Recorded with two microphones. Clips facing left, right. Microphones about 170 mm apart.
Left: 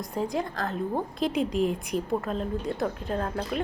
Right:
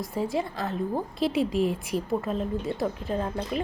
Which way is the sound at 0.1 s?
5° right (ahead or behind).